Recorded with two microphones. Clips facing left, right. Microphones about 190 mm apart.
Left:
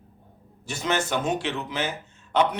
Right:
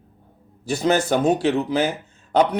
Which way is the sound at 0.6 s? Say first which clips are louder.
Right 7 dB; 35° right (ahead or behind).